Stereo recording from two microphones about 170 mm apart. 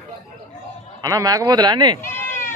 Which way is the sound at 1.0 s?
20° right (ahead or behind).